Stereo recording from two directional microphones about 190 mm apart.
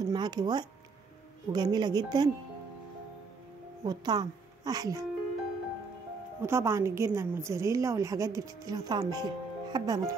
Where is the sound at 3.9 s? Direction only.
20° right (ahead or behind).